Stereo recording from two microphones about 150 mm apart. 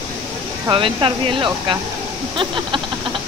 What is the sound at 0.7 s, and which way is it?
Speech, 35° right (ahead or behind).